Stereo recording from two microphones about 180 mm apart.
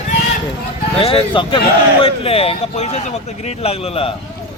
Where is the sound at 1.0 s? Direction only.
30° left (ahead or behind).